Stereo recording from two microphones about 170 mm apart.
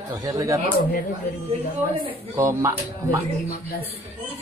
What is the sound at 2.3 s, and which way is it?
Speech, 15° right (ahead or behind).